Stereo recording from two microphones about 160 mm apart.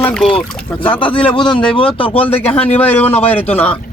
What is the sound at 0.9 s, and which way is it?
Speech, 35° left (ahead or behind).